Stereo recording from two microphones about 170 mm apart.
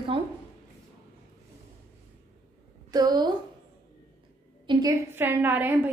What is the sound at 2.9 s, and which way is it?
Speech, 25° right (ahead or behind).